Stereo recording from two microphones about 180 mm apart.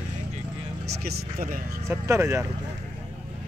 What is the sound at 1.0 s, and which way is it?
Speech, 50° right (ahead or behind).